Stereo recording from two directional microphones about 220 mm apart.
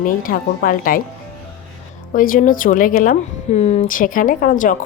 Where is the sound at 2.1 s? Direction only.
40° left (ahead or behind).